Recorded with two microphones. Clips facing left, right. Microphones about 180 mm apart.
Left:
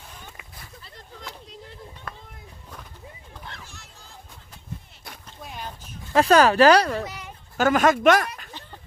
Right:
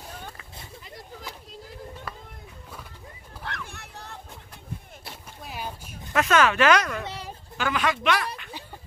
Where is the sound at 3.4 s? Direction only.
65° right (ahead or behind).